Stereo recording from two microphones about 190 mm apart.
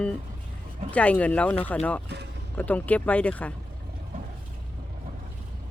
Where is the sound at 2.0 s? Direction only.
60° right (ahead or behind).